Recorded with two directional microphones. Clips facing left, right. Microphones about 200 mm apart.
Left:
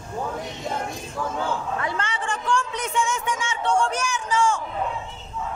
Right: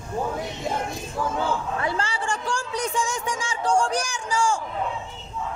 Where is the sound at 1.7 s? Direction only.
30° right (ahead or behind).